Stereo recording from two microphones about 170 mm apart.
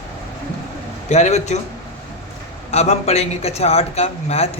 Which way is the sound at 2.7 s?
40° left (ahead or behind).